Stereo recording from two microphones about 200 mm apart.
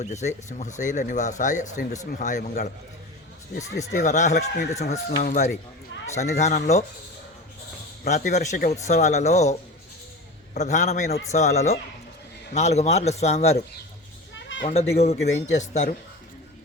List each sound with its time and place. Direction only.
0.0 s speech: 35° left (ahead or behind)
3.9 s speech: 35° left (ahead or behind)
8.1 s speech: 35° left (ahead or behind)
14.3 s children playing: 65° left (ahead or behind)
14.7 s speech: 30° left (ahead or behind)